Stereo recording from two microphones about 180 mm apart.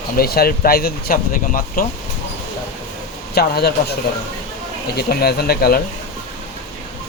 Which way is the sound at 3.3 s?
60° left (ahead or behind).